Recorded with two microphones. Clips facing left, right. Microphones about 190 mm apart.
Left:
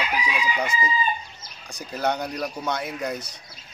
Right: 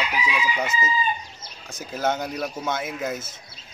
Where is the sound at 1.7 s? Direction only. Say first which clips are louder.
Even; 5° right (ahead or behind).